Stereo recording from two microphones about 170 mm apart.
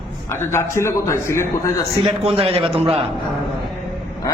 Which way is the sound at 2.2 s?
35° right (ahead or behind).